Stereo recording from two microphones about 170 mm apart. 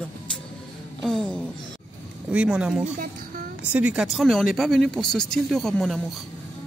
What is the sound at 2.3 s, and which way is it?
Speech, 5° right (ahead or behind).